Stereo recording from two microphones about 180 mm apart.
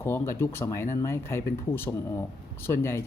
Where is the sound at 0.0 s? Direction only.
15° left (ahead or behind).